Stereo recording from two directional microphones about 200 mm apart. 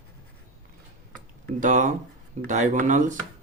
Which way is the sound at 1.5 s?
40° right (ahead or behind).